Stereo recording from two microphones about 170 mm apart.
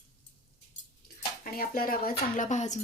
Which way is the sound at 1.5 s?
60° left (ahead or behind).